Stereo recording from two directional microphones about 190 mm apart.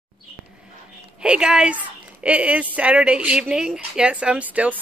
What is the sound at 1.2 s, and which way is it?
Speech, 5° right (ahead or behind).